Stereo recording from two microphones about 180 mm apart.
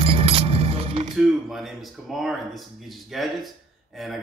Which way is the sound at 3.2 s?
Centre (ahead or behind).